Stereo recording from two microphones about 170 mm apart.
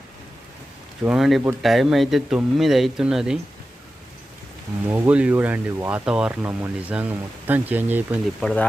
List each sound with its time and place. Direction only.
1.0 s speech: 5° right (ahead or behind)
4.9 s speech: 10° right (ahead or behind)